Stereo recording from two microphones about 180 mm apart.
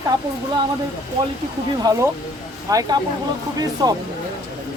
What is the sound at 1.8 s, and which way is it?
Speech, 20° right (ahead or behind).